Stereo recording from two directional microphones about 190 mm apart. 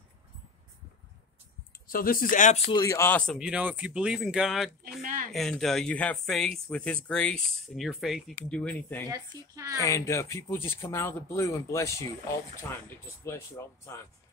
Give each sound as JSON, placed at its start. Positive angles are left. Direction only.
{"t": 1.7, "sound": "speech", "side_deg": 50}
{"t": 2.7, "sound": "speech", "side_deg": 15}
{"t": 3.3, "sound": "speech", "side_deg": -5}
{"t": 5.0, "sound": "speech", "side_deg": -45}
{"t": 5.3, "sound": "speech", "side_deg": 0}
{"t": 9.1, "sound": "speech", "side_deg": -15}
{"t": 9.8, "sound": "speech", "side_deg": 15}
{"t": 13.2, "sound": "speech", "side_deg": 15}